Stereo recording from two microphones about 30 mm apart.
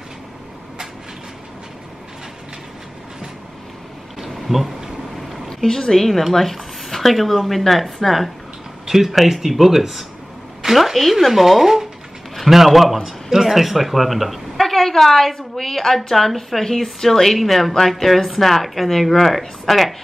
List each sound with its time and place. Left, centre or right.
4.4 s speech: centre
5.6 s a woman's voice: centre
6.3 s speech: centre
8.8 s a sound: centre
9.1 s a woman's voice: centre
13.0 s a woman's voice: centre
14.6 s a woman's voice: centre